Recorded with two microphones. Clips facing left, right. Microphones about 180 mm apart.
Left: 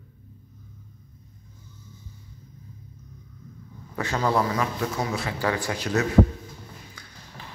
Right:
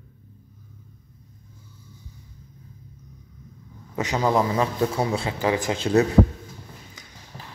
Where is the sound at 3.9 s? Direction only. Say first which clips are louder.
Right 2 dB; 15° right (ahead or behind).